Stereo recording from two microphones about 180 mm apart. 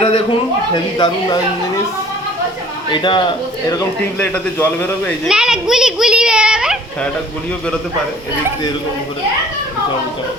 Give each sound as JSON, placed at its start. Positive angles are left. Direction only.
{"t": 0.0, "sound": "a man's voice", "side_deg": 25}
{"t": 2.9, "sound": "a man's voice", "side_deg": 25}
{"t": 4.5, "sound": "speech", "side_deg": 10}
{"t": 5.3, "sound": "a child's voice", "side_deg": -5}